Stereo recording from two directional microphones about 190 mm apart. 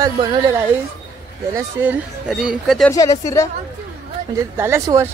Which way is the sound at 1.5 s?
10° right (ahead or behind).